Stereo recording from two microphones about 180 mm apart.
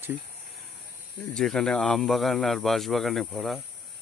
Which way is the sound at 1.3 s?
5° left (ahead or behind).